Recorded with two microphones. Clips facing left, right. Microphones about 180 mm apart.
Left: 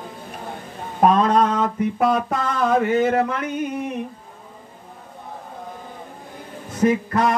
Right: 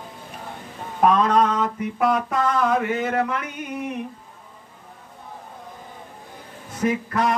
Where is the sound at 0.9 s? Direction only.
30° left (ahead or behind).